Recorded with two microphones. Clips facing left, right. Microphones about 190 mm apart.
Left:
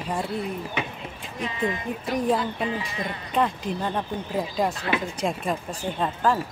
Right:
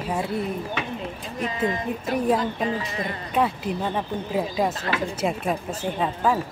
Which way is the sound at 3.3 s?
5° right (ahead or behind).